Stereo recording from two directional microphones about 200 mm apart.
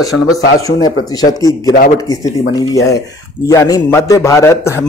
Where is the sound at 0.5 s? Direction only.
15° left (ahead or behind).